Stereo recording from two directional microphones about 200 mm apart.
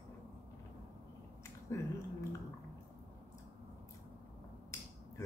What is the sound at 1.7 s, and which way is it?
Speech, 15° left (ahead or behind).